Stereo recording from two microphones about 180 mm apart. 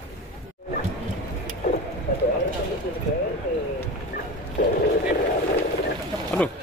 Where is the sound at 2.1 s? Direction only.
60° left (ahead or behind).